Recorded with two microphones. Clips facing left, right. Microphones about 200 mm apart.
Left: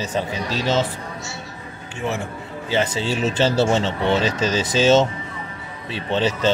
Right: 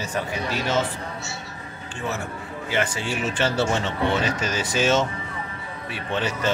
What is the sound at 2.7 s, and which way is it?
Speech, 25° left (ahead or behind).